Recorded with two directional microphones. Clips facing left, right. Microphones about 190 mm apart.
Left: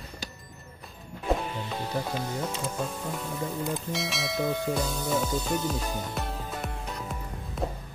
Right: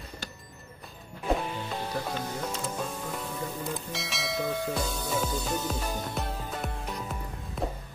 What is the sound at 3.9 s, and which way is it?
Bell, centre (ahead or behind).